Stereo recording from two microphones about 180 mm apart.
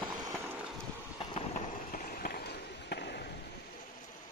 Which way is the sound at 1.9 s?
50° left (ahead or behind).